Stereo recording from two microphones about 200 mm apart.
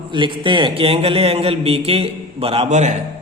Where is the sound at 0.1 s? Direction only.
25° right (ahead or behind).